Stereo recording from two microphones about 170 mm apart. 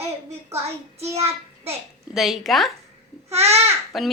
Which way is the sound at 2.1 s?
Centre (ahead or behind).